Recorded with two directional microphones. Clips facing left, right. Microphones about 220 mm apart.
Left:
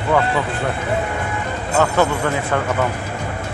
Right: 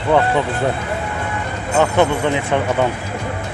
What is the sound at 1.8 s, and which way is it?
Speech, 20° right (ahead or behind).